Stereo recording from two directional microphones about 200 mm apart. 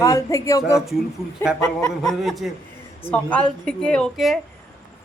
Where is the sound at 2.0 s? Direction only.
Centre (ahead or behind).